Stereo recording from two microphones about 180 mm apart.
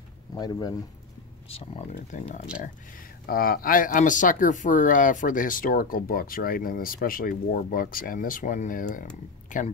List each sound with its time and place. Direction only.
0.3 s speech: 20° left (ahead or behind)
1.5 s speech: 35° left (ahead or behind)
3.3 s speech: 55° left (ahead or behind)